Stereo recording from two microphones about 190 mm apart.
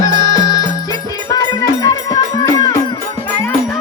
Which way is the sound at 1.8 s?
20° left (ahead or behind).